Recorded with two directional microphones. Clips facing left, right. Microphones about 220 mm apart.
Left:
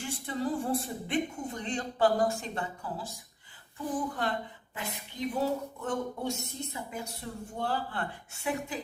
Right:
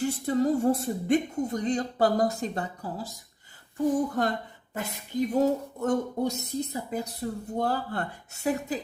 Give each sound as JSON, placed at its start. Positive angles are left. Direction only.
{"t": 0.0, "sound": "speech", "side_deg": -40}